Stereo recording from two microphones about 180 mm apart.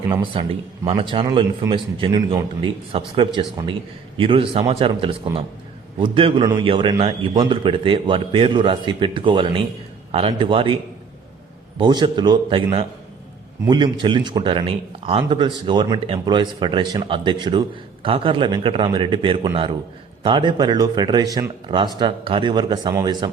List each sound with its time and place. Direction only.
0.4 s a man's voice: 30° right (ahead or behind)
11.8 s a man's voice: 25° right (ahead or behind)